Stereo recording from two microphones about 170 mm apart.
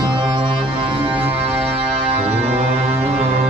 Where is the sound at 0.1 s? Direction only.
30° right (ahead or behind).